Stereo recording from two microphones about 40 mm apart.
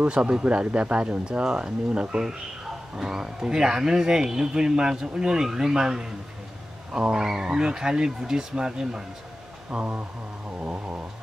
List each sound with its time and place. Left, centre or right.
0.0 s speech: right
6.9 s vehicle: centre
7.4 s speech: centre
9.7 s snoring: right